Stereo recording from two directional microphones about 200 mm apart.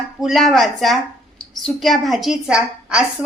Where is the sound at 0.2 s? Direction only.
Centre (ahead or behind).